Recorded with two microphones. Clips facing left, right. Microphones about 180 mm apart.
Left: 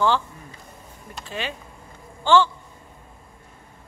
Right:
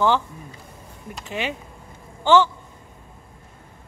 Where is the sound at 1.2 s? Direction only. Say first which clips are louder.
Right 3 dB; 20° right (ahead or behind).